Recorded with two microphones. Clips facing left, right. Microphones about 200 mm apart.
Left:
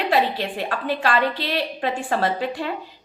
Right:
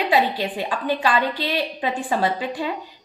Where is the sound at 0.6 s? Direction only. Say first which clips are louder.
Right 1 dB; centre (ahead or behind).